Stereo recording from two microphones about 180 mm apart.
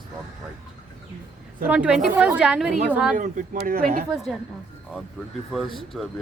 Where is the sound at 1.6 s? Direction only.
5° right (ahead or behind).